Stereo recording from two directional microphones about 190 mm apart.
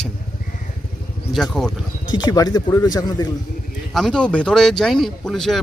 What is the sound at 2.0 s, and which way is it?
Speech, 20° left (ahead or behind).